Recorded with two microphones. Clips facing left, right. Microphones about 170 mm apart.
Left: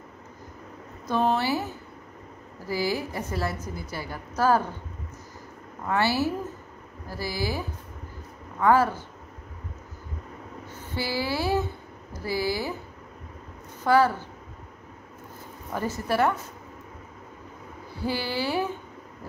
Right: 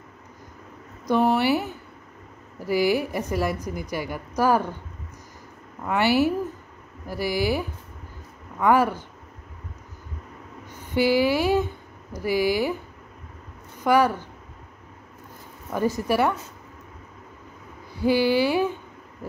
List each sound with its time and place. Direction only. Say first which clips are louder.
1.0 s a woman's voice: right 4 dB; 15° right (ahead or behind)
5.9 s a woman's voice: right 4 dB; 15° right (ahead or behind)
10.7 s speech: right 10 dB; 15° right (ahead or behind)
13.8 s a woman's voice: right 1 dB; 15° right (ahead or behind)
15.7 s a woman's voice: right 4 dB; 15° right (ahead or behind)
17.9 s a woman's voice: right 9 dB; 15° right (ahead or behind)